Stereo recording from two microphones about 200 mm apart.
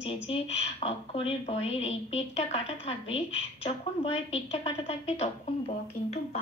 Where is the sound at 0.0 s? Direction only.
30° left (ahead or behind).